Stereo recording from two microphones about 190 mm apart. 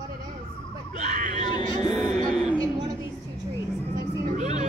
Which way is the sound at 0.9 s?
40° right (ahead or behind).